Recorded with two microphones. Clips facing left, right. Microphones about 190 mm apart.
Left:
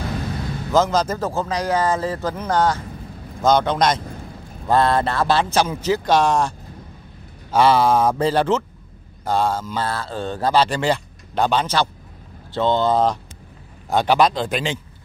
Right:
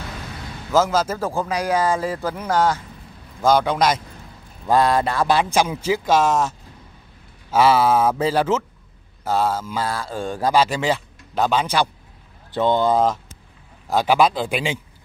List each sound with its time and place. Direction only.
0.7 s speech: 5° right (ahead or behind)
7.5 s speech: 5° right (ahead or behind)